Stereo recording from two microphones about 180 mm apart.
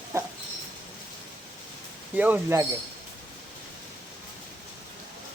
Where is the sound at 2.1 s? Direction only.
10° right (ahead or behind).